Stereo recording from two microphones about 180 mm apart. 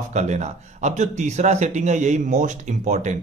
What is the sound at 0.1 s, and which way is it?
A man's voice, 40° right (ahead or behind).